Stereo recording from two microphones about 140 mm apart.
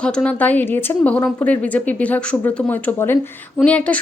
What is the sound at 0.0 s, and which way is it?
A woman's voice, 10° left (ahead or behind).